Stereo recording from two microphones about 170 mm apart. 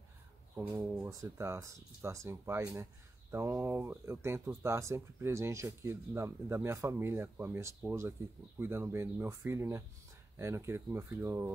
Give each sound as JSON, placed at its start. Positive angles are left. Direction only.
{"t": 0.6, "sound": "speech", "side_deg": -10}